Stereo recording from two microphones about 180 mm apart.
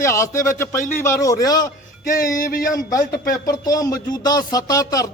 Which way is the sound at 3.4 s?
20° left (ahead or behind).